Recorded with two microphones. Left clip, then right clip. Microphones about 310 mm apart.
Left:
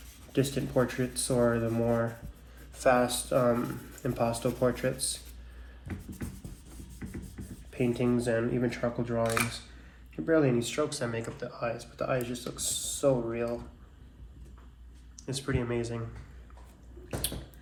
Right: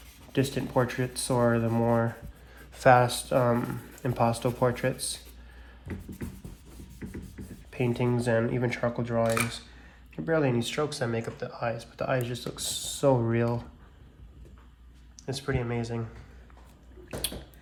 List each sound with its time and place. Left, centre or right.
0.3 s speech: right
7.0 s music: centre
7.4 s a sound: centre
7.7 s speech: right
15.1 s speech: centre